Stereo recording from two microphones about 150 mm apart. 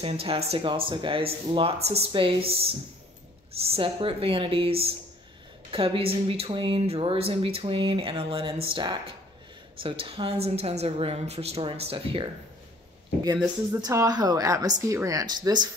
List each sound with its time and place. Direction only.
0.0 s speech: 40° right (ahead or behind)
13.2 s a woman's voice: 25° right (ahead or behind)